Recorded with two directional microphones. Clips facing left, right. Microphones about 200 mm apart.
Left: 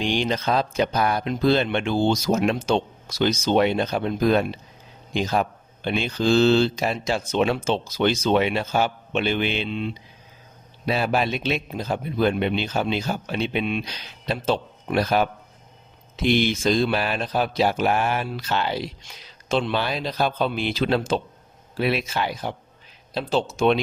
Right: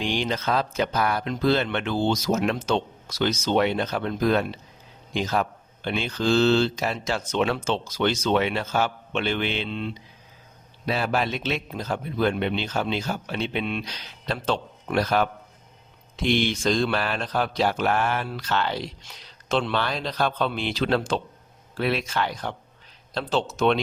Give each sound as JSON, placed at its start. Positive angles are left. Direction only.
{"t": 0.0, "sound": "speech", "side_deg": 15}